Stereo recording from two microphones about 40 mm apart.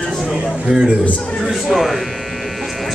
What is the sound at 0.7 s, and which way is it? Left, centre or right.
Speech, right.